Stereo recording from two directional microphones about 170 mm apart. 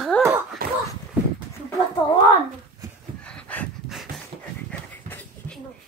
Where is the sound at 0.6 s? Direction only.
60° right (ahead or behind).